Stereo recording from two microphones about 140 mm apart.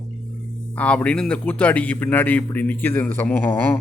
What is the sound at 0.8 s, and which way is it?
Speech, 10° left (ahead or behind).